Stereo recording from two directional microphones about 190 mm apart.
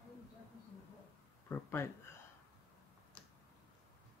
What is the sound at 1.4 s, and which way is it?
Speech, 10° left (ahead or behind).